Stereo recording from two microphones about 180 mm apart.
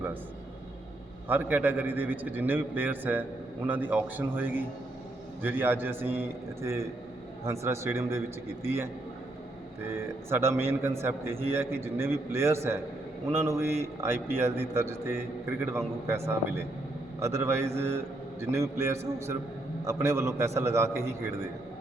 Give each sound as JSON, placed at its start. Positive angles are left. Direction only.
{"t": 1.3, "sound": "a man's voice", "side_deg": -10}
{"t": 9.9, "sound": "a man's voice", "side_deg": -15}